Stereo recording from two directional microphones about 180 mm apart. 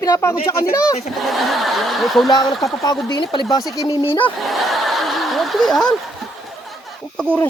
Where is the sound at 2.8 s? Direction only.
25° left (ahead or behind).